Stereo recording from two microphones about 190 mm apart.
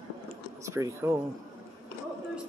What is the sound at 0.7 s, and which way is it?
Speech, 15° right (ahead or behind).